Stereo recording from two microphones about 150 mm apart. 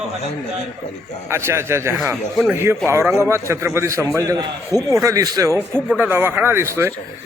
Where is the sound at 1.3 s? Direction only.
15° right (ahead or behind).